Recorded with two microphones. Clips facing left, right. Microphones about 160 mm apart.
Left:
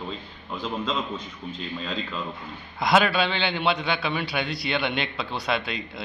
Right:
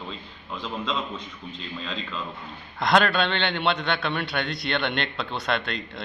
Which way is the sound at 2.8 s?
5° left (ahead or behind).